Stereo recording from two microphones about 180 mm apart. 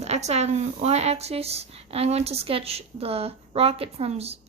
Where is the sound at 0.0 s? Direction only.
35° right (ahead or behind).